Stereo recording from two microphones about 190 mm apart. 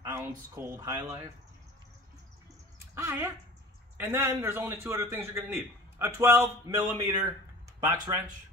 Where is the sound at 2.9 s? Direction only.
15° right (ahead or behind).